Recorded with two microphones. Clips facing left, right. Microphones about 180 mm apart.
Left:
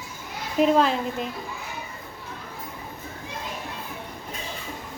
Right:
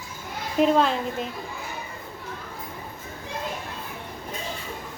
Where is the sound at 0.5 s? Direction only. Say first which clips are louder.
Even; centre (ahead or behind).